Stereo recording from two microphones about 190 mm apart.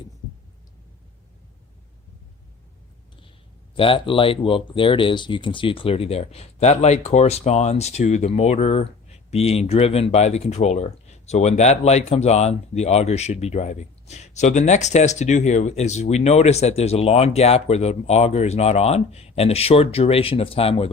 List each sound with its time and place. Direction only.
3.8 s speech: 30° left (ahead or behind)